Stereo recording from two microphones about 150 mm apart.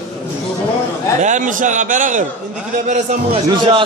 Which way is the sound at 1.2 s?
55° right (ahead or behind).